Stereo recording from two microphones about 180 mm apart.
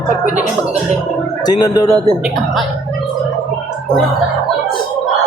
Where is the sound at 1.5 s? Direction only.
20° left (ahead or behind).